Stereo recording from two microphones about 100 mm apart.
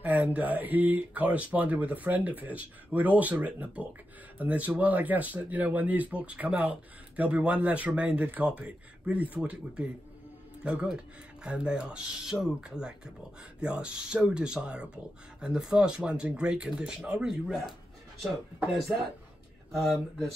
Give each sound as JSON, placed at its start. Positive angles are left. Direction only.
{"t": 0.0, "sound": "speech", "side_deg": -15}
{"t": 19.8, "sound": "speech", "side_deg": 0}